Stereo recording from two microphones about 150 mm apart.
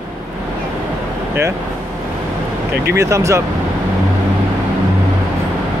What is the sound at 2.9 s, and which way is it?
Speech, 20° right (ahead or behind).